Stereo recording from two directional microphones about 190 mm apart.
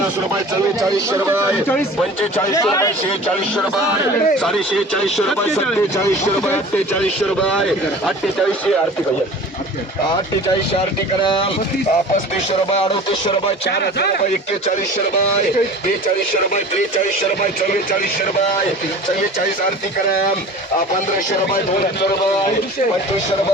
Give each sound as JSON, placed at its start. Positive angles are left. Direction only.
{"t": 0.8, "sound": "speech", "side_deg": -20}
{"t": 2.4, "sound": "speech", "side_deg": 15}
{"t": 4.4, "sound": "speech", "side_deg": 0}
{"t": 11.2, "sound": "speech", "side_deg": 25}
{"t": 13.7, "sound": "speech", "side_deg": 60}